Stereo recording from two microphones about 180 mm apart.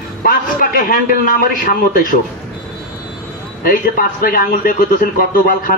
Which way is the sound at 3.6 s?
55° left (ahead or behind).